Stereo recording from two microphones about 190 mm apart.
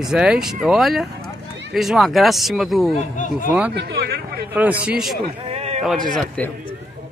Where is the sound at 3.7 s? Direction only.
60° right (ahead or behind).